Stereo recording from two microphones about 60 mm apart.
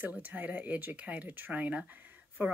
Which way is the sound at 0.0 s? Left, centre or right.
Right.